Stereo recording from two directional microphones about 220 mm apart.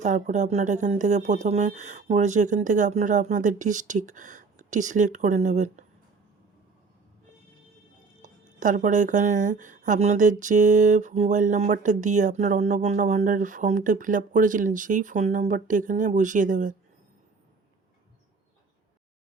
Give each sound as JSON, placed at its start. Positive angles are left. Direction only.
{"t": 0.0, "sound": "speech", "side_deg": -35}
{"t": 8.2, "sound": "speech", "side_deg": -35}